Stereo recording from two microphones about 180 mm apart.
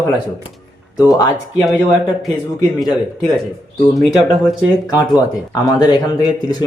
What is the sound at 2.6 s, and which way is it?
Speech, 20° left (ahead or behind).